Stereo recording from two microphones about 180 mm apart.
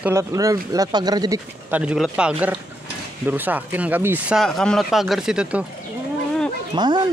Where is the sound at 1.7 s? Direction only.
5° right (ahead or behind).